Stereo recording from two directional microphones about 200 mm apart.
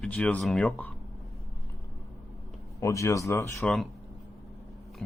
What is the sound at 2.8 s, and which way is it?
Speech, 15° left (ahead or behind).